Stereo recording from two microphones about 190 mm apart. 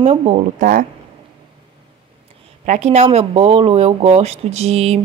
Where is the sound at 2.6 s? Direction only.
35° right (ahead or behind).